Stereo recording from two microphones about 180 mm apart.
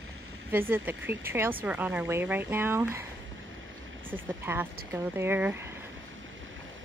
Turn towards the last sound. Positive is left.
turn(degrees=-10)  # may be behind; listen again after turning